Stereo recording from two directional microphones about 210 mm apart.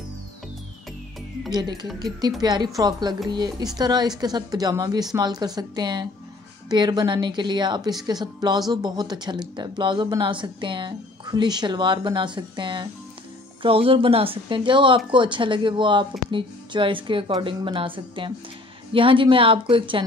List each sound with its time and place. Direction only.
1.5 s speech: 20° right (ahead or behind)